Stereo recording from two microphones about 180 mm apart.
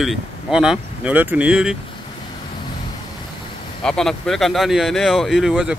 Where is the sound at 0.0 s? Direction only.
5° right (ahead or behind).